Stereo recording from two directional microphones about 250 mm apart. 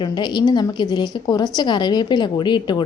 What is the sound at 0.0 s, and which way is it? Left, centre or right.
A woman's voice, centre.